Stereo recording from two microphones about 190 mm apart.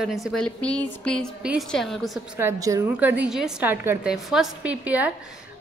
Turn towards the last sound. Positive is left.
turn(degrees=-10)  # may be behind; listen again after turning